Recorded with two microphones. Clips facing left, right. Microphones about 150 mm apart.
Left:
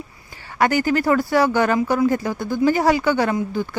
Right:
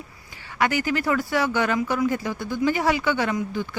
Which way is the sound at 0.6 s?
40° left (ahead or behind).